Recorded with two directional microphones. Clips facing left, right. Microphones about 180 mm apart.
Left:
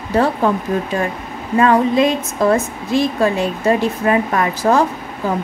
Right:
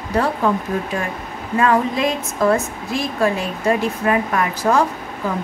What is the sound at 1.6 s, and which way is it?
Speech, 35° left (ahead or behind).